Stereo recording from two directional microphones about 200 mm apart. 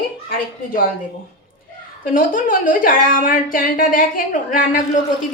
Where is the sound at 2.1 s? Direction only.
40° left (ahead or behind).